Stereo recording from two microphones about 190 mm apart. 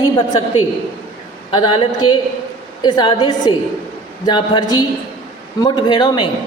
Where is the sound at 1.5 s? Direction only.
25° left (ahead or behind).